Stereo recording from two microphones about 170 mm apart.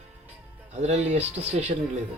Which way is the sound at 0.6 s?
40° right (ahead or behind).